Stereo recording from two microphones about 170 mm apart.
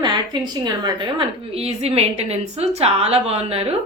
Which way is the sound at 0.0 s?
25° right (ahead or behind).